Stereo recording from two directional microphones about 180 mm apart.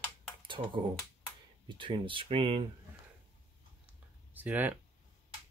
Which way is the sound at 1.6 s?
30° right (ahead or behind).